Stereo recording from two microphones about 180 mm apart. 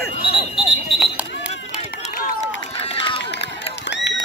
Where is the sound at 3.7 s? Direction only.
75° left (ahead or behind).